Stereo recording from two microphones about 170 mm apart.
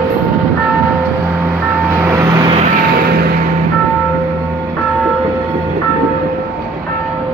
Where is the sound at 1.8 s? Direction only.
15° right (ahead or behind).